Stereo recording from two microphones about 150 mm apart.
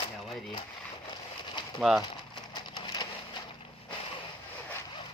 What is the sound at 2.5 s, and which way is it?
Crushing, 30° left (ahead or behind).